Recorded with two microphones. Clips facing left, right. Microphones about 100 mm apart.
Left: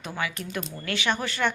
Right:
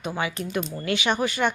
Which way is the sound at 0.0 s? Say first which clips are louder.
Right 4 dB; 20° right (ahead or behind).